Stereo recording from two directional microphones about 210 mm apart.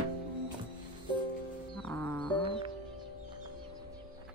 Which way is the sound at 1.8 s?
5° left (ahead or behind).